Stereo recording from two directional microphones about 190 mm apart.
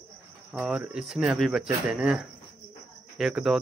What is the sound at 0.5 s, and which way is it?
Speech, 5° right (ahead or behind).